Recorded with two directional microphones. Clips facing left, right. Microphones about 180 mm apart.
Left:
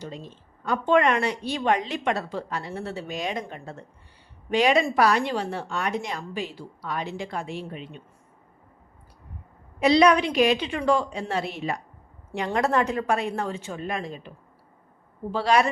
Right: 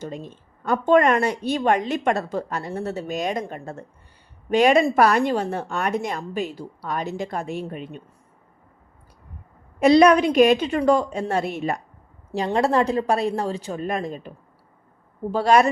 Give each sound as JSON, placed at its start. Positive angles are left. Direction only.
{"t": 0.0, "sound": "a woman's voice", "side_deg": -50}
{"t": 9.8, "sound": "a woman's voice", "side_deg": -45}
{"t": 12.5, "sound": "a woman's voice", "side_deg": -30}